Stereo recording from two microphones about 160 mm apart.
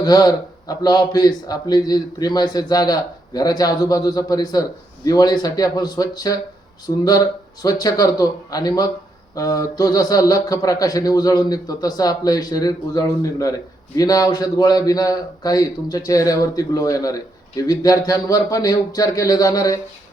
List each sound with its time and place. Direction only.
0.0 s a man's voice: 25° left (ahead or behind)